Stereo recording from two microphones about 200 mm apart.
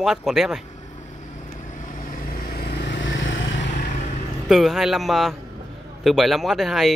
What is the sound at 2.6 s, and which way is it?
Vehicle, 55° left (ahead or behind).